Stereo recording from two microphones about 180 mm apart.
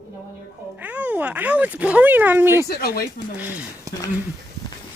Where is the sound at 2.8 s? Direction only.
60° left (ahead or behind).